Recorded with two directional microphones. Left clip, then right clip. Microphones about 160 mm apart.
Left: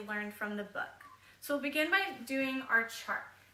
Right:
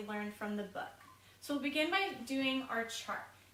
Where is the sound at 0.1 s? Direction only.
25° left (ahead or behind).